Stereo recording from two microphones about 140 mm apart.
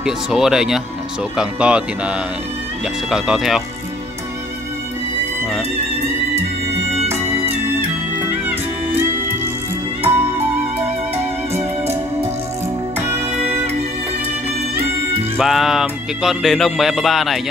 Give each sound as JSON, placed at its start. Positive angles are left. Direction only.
{"t": 0.0, "sound": "speech", "side_deg": -5}
{"t": 10.0, "sound": "music", "side_deg": -15}
{"t": 11.5, "sound": "music", "side_deg": -15}
{"t": 15.3, "sound": "speech", "side_deg": -5}